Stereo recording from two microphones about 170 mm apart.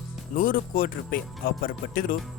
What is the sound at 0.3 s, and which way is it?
Speech, 55° left (ahead or behind).